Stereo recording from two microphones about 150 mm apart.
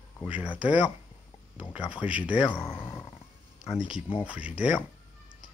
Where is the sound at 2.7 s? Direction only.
15° left (ahead or behind).